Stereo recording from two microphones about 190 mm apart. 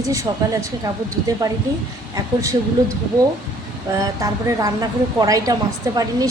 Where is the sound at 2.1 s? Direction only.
15° right (ahead or behind).